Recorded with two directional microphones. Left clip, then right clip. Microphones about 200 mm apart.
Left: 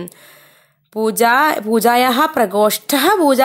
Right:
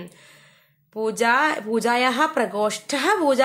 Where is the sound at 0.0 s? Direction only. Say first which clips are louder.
Left 9 dB; 45° left (ahead or behind).